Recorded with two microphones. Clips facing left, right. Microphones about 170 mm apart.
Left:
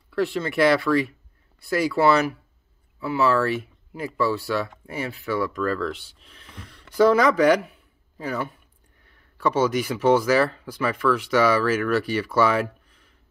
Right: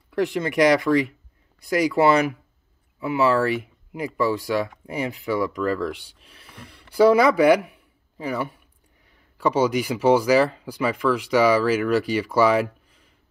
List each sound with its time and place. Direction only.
0.1 s speech: 15° right (ahead or behind)